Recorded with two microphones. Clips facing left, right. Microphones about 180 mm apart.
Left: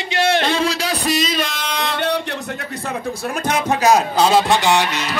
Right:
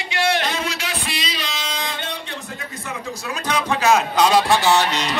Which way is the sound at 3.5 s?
40° left (ahead or behind).